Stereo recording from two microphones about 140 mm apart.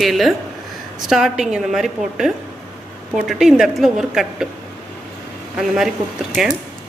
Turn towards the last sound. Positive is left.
turn(degrees=0)  # may be behind; listen again after turning